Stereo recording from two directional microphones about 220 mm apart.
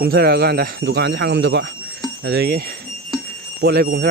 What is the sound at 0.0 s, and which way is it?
Speech, 45° right (ahead or behind).